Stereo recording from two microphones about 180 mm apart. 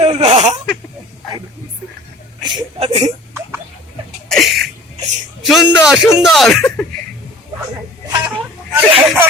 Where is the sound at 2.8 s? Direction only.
35° right (ahead or behind).